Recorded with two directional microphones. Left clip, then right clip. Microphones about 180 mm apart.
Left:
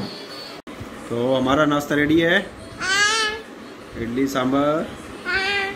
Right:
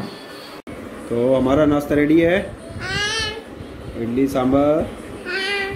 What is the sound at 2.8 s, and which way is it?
Babbling, 45° left (ahead or behind).